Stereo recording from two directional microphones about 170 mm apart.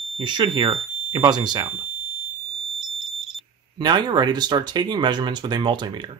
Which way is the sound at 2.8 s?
Centre (ahead or behind).